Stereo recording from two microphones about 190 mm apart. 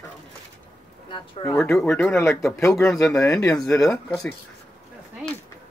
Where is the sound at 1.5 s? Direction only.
5° left (ahead or behind).